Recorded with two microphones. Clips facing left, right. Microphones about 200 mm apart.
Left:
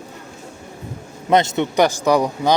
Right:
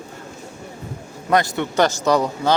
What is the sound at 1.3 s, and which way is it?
A man's voice, 20° left (ahead or behind).